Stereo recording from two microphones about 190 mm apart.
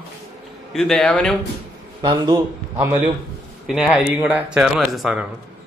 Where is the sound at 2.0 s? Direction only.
25° right (ahead or behind).